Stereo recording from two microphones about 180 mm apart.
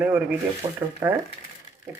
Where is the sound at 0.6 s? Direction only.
25° right (ahead or behind).